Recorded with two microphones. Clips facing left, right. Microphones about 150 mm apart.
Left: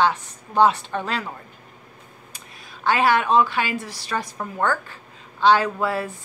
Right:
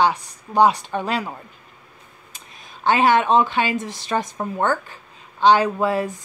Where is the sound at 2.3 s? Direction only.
20° right (ahead or behind).